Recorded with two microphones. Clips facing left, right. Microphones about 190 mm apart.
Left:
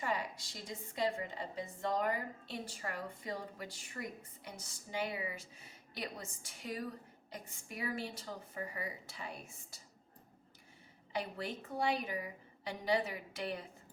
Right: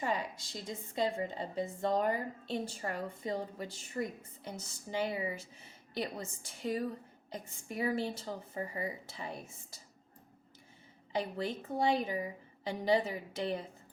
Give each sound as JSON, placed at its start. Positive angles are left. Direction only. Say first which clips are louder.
{"t": 0.0, "sound": "a woman's voice", "louder": "right 3 dB", "side_deg": -20}
{"t": 11.1, "sound": "a woman's voice", "louder": "right 5 dB", "side_deg": -25}